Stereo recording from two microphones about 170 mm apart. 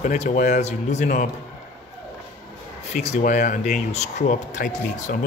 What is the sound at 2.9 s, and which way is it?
Speech, 40° left (ahead or behind).